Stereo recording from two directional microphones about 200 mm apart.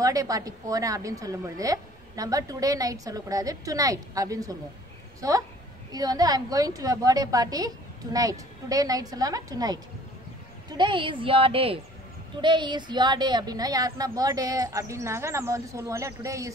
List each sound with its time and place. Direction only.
0.0 s a woman's voice: 15° right (ahead or behind)
10.8 s a woman's voice: 25° right (ahead or behind)